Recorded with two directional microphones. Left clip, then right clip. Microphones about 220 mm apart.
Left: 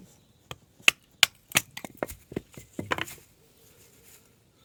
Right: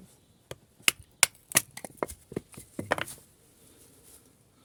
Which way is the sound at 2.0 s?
10° left (ahead or behind).